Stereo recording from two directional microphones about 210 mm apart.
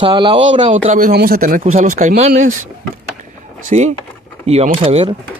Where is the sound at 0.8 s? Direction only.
40° right (ahead or behind).